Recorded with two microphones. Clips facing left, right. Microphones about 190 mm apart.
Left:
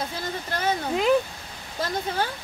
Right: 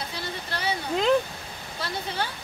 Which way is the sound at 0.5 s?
45° left (ahead or behind).